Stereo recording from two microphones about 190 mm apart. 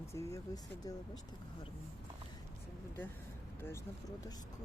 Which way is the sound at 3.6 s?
15° left (ahead or behind).